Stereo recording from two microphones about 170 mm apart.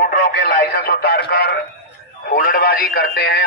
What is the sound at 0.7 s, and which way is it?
Speech, 65° left (ahead or behind).